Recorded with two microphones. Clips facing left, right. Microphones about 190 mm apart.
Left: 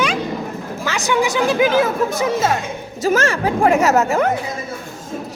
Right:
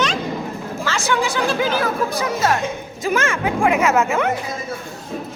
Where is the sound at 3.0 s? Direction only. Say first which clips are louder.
Left 4 dB; 40° left (ahead or behind).